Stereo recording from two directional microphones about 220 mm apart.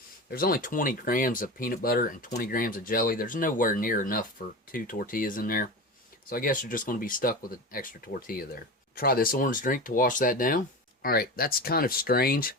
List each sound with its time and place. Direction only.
0.3 s speech: 40° left (ahead or behind)